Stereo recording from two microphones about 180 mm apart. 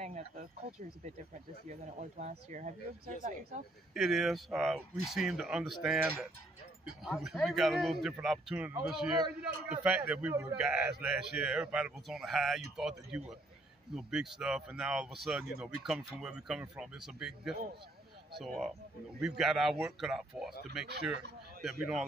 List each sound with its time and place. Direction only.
0.0 s speech: 45° right (ahead or behind)
3.9 s a man's voice: centre (ahead or behind)
20.8 s speech: 65° right (ahead or behind)